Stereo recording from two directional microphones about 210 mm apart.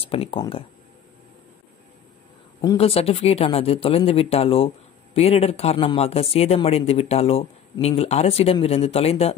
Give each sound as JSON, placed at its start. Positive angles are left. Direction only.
{"t": 0.0, "sound": "speech", "side_deg": 25}
{"t": 2.8, "sound": "speech", "side_deg": 30}